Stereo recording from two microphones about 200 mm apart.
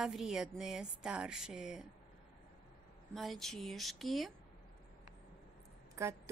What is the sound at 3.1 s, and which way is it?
A woman's voice, centre (ahead or behind).